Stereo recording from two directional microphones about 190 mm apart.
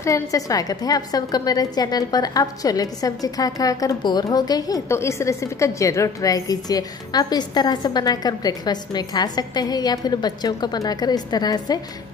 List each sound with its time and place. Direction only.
0.0 s a woman's voice: 15° left (ahead or behind)